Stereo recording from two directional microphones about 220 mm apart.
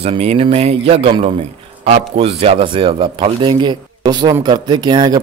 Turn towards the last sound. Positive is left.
turn(degrees=-20)  # may be behind; listen again after turning